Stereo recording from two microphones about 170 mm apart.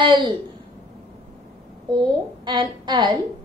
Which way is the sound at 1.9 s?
25° right (ahead or behind).